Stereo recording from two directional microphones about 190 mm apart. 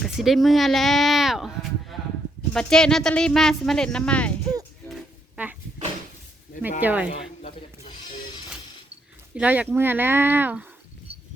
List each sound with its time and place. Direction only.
0.0 s speech: centre (ahead or behind)
1.9 s a sound: centre (ahead or behind)
2.5 s speech: 5° left (ahead or behind)
6.6 s speech: 10° right (ahead or behind)
9.3 s speech: 10° right (ahead or behind)
11.1 s insect: 30° right (ahead or behind)